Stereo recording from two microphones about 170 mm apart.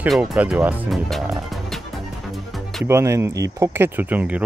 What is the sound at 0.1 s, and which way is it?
Speech, 5° right (ahead or behind).